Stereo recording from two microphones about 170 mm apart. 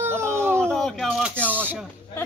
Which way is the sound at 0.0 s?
15° right (ahead or behind).